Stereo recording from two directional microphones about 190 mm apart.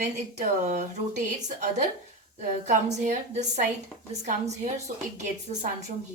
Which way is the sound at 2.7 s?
40° right (ahead or behind).